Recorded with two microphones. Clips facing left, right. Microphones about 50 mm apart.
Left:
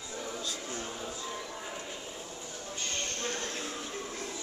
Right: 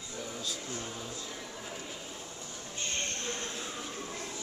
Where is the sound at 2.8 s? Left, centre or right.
Right.